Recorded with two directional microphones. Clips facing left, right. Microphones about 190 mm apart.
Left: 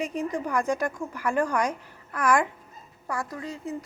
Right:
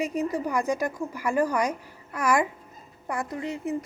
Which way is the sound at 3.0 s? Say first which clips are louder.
Right 2 dB; 20° right (ahead or behind).